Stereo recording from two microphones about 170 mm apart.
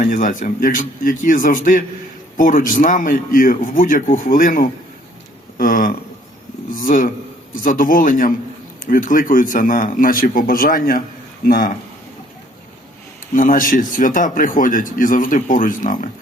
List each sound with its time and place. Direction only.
0.0 s speech: 50° left (ahead or behind)
13.3 s speech: 55° left (ahead or behind)